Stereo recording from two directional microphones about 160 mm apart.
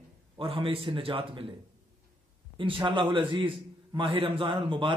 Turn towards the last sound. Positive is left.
turn(degrees=-30)  # may be behind; listen again after turning